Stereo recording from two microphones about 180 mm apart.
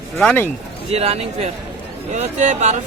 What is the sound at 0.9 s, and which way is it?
Speech, 35° right (ahead or behind).